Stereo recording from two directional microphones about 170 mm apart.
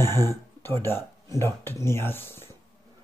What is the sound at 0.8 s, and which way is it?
Speech, 15° left (ahead or behind).